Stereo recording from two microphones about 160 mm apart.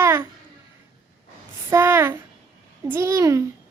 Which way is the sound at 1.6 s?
15° right (ahead or behind).